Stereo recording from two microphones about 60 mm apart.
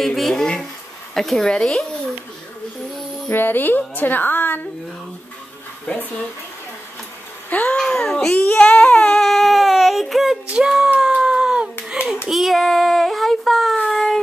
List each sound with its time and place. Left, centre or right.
0.0 s speech: centre
3.3 s a woman's voice: left
7.4 s a sound: left
7.7 s speech: centre
8.4 s speech: left
9.1 s a sound: centre
10.5 s speech: centre
11.0 s a sound: centre
11.9 s hands: centre
12.3 s child singing: centre
13.8 s baby cry: centre